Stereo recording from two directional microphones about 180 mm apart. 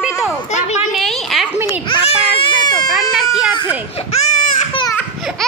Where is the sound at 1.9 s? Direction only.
30° left (ahead or behind).